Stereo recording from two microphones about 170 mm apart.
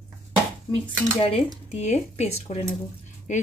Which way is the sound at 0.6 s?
30° left (ahead or behind).